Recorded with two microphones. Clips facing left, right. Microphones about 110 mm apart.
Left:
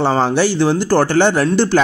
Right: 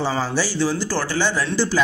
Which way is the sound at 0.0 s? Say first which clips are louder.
Left 8 dB; 60° left (ahead or behind).